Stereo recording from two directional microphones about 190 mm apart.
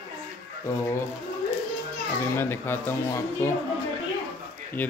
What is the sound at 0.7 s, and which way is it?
Speech, 15° left (ahead or behind).